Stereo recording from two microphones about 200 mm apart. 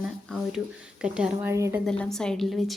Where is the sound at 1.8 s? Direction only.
5° left (ahead or behind).